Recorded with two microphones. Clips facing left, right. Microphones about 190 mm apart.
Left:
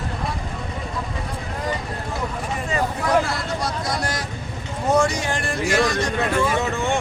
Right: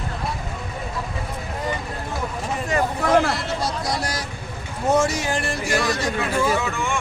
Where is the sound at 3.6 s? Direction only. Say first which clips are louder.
Even; centre (ahead or behind).